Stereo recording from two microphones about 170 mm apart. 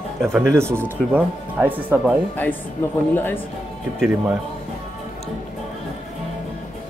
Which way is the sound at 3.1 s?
10° left (ahead or behind).